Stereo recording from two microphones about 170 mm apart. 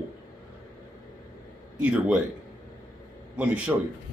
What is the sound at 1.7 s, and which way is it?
Speech, 5° right (ahead or behind).